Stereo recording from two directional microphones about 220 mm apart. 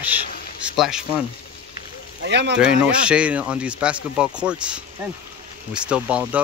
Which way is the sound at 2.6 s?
5° right (ahead or behind).